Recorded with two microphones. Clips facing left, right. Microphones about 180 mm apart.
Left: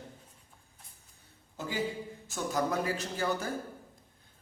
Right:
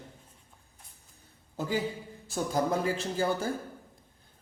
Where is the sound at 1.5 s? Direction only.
40° right (ahead or behind).